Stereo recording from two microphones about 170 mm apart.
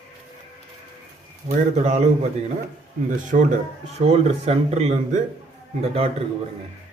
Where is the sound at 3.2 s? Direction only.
50° right (ahead or behind).